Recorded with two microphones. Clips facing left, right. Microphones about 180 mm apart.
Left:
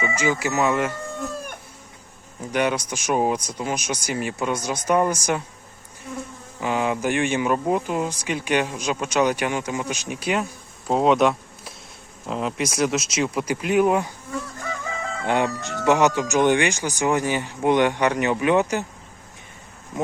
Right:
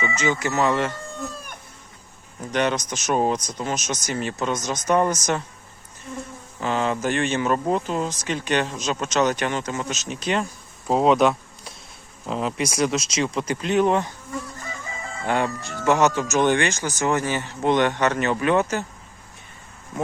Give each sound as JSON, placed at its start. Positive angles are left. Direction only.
{"t": 0.2, "sound": "speech", "side_deg": 10}
{"t": 2.4, "sound": "speech", "side_deg": 10}
{"t": 6.6, "sound": "speech", "side_deg": 10}
{"t": 14.7, "sound": "chicken", "side_deg": 75}
{"t": 15.4, "sound": "speech", "side_deg": 70}
{"t": 15.9, "sound": "speech", "side_deg": 15}